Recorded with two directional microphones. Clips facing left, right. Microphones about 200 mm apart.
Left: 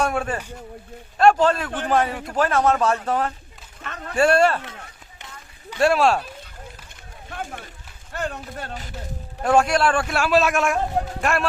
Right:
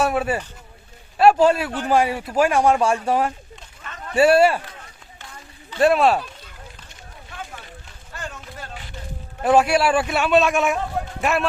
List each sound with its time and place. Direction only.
0.0 s a man's voice: 5° right (ahead or behind)
5.8 s a man's voice: centre (ahead or behind)
7.3 s a sound: 50° left (ahead or behind)
8.1 s run: 60° left (ahead or behind)
9.4 s a man's voice: 5° right (ahead or behind)